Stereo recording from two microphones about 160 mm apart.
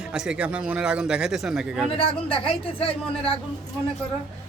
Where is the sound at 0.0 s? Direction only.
5° right (ahead or behind).